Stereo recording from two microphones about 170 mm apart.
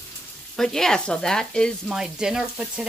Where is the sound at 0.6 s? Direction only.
Centre (ahead or behind).